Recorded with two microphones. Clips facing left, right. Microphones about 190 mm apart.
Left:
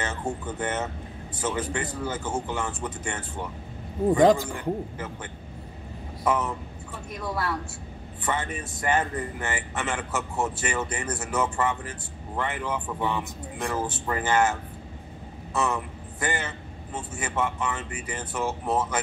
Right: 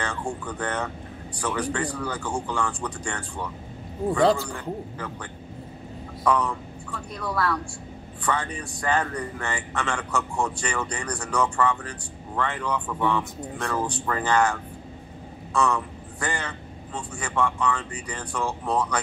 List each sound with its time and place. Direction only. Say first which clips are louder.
0.0 s a man's voice: even; 20° left (ahead or behind)